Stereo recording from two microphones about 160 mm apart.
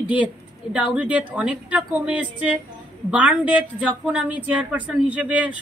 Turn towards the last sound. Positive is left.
turn(degrees=-10)  # may be behind; listen again after turning